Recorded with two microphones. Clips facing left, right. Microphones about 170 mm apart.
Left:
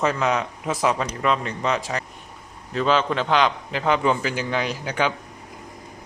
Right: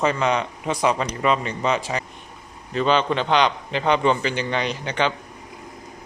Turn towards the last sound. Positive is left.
turn(degrees=5)  # may be behind; listen again after turning